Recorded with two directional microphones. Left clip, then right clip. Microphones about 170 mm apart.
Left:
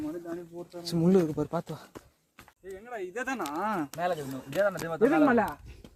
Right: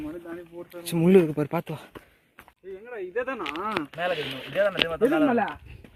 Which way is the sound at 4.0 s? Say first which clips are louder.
Right 3 dB; 70° right (ahead or behind).